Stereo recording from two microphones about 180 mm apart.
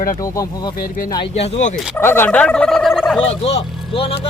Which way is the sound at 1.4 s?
40° left (ahead or behind).